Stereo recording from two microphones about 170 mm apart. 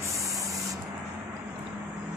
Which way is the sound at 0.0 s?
20° right (ahead or behind).